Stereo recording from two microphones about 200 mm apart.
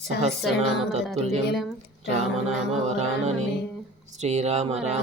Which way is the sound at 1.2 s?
30° right (ahead or behind).